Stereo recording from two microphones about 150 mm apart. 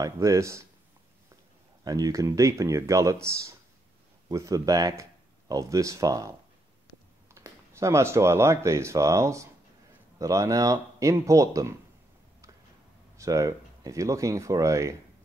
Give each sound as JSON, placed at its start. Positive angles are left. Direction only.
{"t": 0.0, "sound": "speech", "side_deg": -20}
{"t": 1.9, "sound": "speech", "side_deg": -25}
{"t": 7.3, "sound": "speech", "side_deg": -20}
{"t": 13.2, "sound": "speech", "side_deg": -20}